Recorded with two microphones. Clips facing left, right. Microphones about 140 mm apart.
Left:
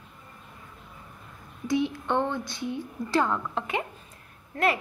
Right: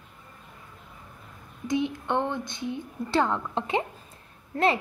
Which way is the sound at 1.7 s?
20° right (ahead or behind).